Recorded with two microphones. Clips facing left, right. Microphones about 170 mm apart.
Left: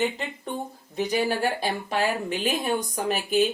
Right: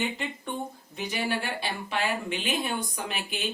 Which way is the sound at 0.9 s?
40° left (ahead or behind).